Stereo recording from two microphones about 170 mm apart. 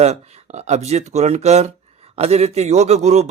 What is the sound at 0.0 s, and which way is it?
A man's voice, 40° right (ahead or behind).